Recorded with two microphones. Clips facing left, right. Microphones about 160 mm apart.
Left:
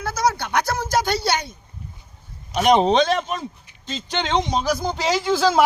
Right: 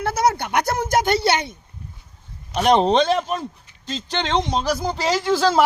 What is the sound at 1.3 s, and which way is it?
Speech, 25° right (ahead or behind).